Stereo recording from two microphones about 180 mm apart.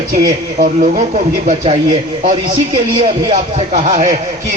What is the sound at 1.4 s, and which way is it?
Speech, 30° right (ahead or behind).